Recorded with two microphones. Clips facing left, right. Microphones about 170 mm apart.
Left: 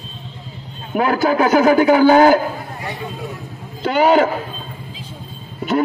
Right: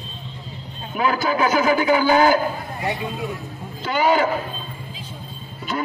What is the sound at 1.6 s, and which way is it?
Speech, 50° left (ahead or behind).